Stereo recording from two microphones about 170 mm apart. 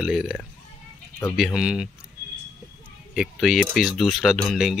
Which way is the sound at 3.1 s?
5° right (ahead or behind).